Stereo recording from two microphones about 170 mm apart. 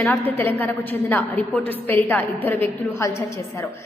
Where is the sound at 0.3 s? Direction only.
10° left (ahead or behind).